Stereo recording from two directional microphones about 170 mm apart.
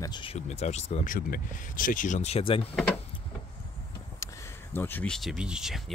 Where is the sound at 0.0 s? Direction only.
30° left (ahead or behind).